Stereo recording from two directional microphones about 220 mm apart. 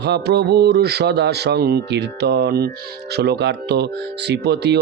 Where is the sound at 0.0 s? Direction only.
50° right (ahead or behind).